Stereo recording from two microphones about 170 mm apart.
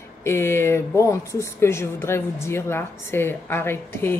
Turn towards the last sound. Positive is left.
turn(degrees=15)  # may be behind; listen again after turning